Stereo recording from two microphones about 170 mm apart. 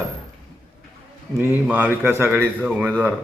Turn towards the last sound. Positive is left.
turn(degrees=-5)  # may be behind; listen again after turning